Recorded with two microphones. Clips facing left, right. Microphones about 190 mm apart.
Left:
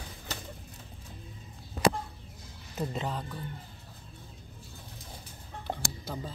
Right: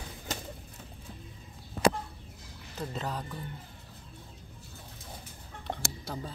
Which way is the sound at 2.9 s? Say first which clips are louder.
Left 1 dB; centre (ahead or behind).